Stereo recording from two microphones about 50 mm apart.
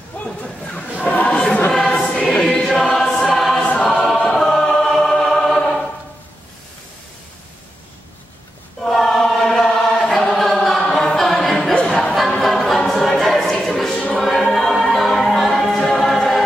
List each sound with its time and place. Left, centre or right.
0.4 s a sound: centre
1.0 s choir: left
1.3 s choir: centre
4.9 s music: centre
8.8 s choir: centre
11.7 s music: left
12.0 s choir: centre